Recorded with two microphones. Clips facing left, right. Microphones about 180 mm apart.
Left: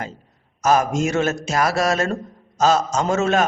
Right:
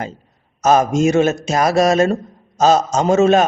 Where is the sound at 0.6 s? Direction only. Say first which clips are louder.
Right 5 dB; 20° right (ahead or behind).